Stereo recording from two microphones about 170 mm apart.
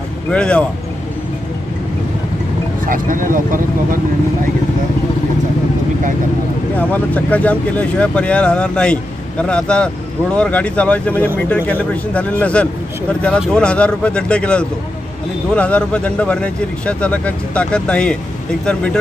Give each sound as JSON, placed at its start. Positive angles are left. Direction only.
{"t": 0.3, "sound": "speech", "side_deg": 5}
{"t": 2.9, "sound": "speech", "side_deg": -55}
{"t": 6.9, "sound": "speech", "side_deg": 10}